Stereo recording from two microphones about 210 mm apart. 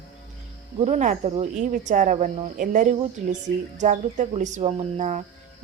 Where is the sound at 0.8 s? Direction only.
30° right (ahead or behind).